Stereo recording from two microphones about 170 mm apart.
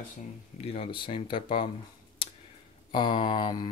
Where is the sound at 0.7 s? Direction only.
30° left (ahead or behind).